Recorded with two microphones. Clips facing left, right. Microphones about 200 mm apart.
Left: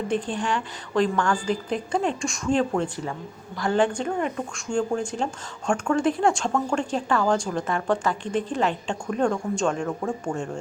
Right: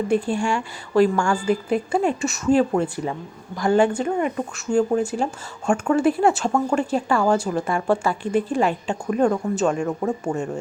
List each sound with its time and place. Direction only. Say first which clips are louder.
0.1 s a woman's voice: right 4 dB; 10° right (ahead or behind)